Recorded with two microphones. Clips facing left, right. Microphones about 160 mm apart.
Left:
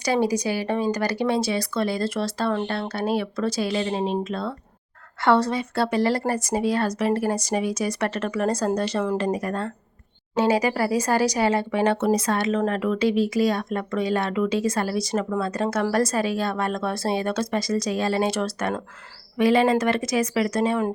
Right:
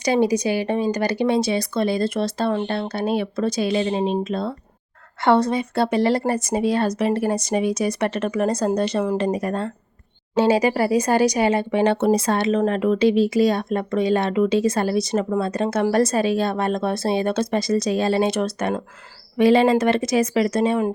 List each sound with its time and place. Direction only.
0.0 s speech: 20° right (ahead or behind)